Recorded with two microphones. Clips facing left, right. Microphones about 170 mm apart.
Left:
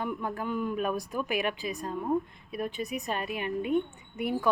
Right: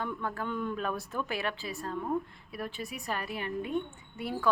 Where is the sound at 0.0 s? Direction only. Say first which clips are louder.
Left 2 dB; 15° left (ahead or behind).